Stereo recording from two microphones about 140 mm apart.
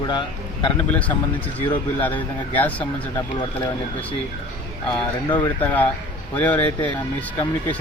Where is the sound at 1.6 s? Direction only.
15° left (ahead or behind).